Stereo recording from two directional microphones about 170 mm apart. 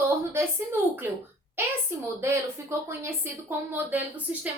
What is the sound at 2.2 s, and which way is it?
Speech, 15° right (ahead or behind).